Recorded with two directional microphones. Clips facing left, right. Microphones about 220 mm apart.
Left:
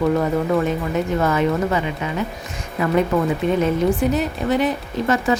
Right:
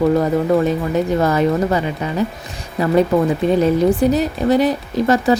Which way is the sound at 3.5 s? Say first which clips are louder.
Right 4 dB; 35° right (ahead or behind).